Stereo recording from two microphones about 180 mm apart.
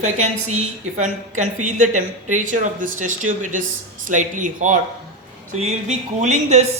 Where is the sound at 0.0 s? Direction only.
40° right (ahead or behind).